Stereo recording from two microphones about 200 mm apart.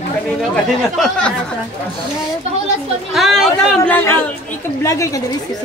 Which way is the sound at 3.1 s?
Centre (ahead or behind).